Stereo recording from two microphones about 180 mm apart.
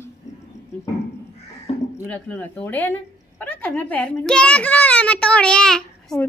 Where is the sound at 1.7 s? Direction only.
30° left (ahead or behind).